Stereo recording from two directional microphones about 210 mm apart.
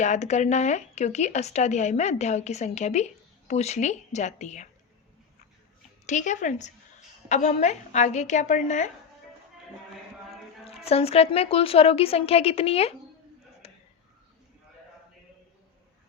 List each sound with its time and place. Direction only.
0.0 s speech: 35° left (ahead or behind)
6.1 s speech: 35° left (ahead or behind)
10.6 s a woman's voice: 30° left (ahead or behind)
13.6 s a sound: 30° left (ahead or behind)